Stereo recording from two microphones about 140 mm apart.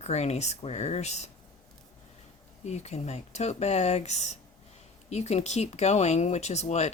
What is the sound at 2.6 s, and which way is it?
Speech, 50° left (ahead or behind).